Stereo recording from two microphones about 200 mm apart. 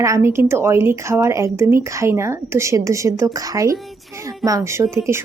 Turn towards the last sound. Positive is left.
turn(degrees=-15)  # may be behind; listen again after turning